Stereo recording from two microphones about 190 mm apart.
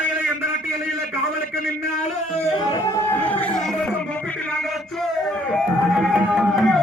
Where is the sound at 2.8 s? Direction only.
10° left (ahead or behind).